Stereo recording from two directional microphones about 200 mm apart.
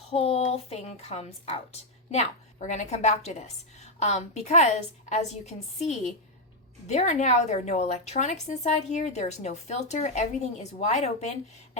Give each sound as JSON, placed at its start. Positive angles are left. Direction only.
{"t": 0.0, "sound": "a woman's voice", "side_deg": 30}